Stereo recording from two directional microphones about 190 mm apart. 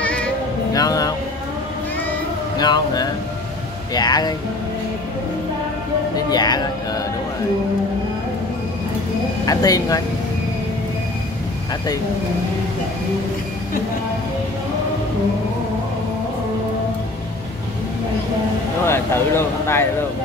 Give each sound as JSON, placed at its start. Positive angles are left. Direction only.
{"t": 0.0, "sound": "music", "side_deg": 5}
{"t": 0.7, "sound": "speech", "side_deg": 20}
{"t": 2.6, "sound": "speech", "side_deg": 20}
{"t": 6.3, "sound": "speech", "side_deg": 20}
{"t": 9.5, "sound": "speech", "side_deg": 20}
{"t": 18.9, "sound": "speech", "side_deg": 15}